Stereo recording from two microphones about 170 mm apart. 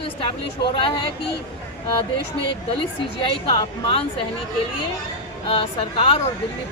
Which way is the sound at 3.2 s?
25° left (ahead or behind).